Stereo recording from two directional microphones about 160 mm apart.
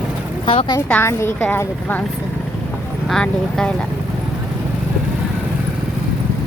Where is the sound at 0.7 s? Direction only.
10° left (ahead or behind).